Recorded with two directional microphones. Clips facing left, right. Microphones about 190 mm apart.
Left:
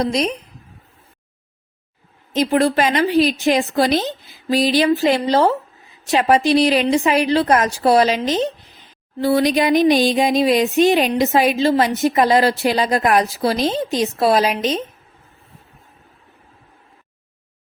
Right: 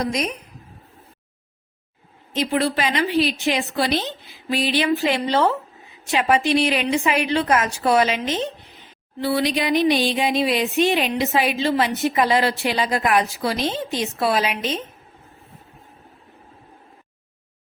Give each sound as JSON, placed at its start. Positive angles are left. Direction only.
{"t": 0.0, "sound": "speech", "side_deg": 30}
{"t": 2.3, "sound": "speech", "side_deg": 45}